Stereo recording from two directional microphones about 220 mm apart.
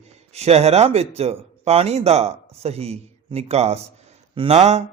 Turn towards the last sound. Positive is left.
turn(degrees=-30)  # may be behind; listen again after turning